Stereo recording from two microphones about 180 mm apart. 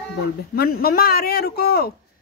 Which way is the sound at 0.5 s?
55° left (ahead or behind).